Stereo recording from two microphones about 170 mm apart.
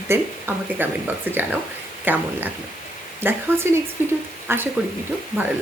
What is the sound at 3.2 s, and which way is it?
Speech, 10° right (ahead or behind).